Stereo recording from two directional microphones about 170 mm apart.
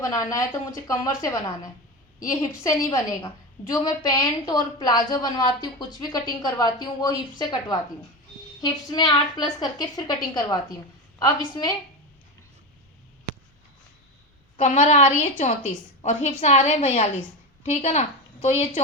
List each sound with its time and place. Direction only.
0.0 s a woman's voice: 20° left (ahead or behind)
11.2 s a woman's voice: 25° left (ahead or behind)
14.5 s a woman's voice: 45° left (ahead or behind)